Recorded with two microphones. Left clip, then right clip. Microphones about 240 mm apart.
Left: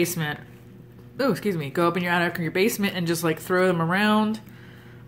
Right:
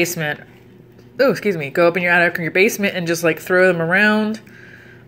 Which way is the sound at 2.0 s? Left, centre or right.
Left.